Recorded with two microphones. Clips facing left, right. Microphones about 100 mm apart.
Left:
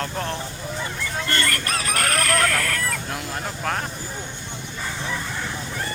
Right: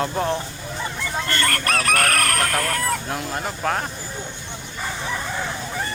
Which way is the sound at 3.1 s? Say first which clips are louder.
Right 3 dB; 5° right (ahead or behind).